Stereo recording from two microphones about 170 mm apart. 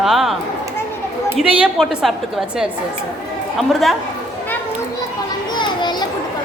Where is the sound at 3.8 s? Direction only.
Centre (ahead or behind).